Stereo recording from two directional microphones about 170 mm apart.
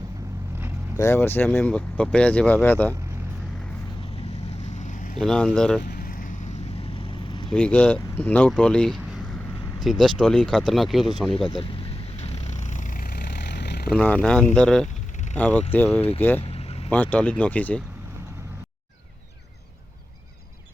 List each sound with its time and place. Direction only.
0.9 s speech: 15° left (ahead or behind)
4.7 s vehicle: 45° left (ahead or behind)
5.1 s speech: centre (ahead or behind)
5.8 s vehicle: 65° left (ahead or behind); by 7.4 s 30° left (ahead or behind)
7.5 s speech: 5° left (ahead or behind)
11.3 s vehicle: 30° left (ahead or behind); by 13.9 s 75° left (ahead or behind)
13.9 s speech: 5° left (ahead or behind)
16.4 s vehicle: 35° left (ahead or behind)
16.9 s speech: 10° left (ahead or behind)